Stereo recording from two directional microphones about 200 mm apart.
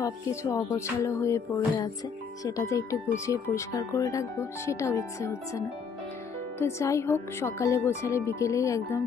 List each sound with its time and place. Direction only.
0.0 s speech: 15° left (ahead or behind)
6.6 s speech: 15° left (ahead or behind)